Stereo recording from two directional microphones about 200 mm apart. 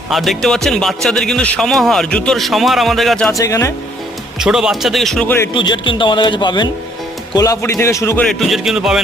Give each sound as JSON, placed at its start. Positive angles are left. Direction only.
{"t": 0.1, "sound": "a man's voice", "side_deg": 0}
{"t": 3.3, "sound": "a man's voice", "side_deg": 15}
{"t": 4.4, "sound": "a man's voice", "side_deg": -5}
{"t": 5.5, "sound": "a man's voice", "side_deg": 25}